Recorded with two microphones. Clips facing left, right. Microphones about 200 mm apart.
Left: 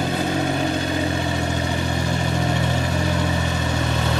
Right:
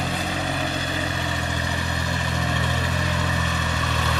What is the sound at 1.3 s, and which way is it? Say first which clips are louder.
Vehicle: left 5 dB; 45° left (ahead or behind).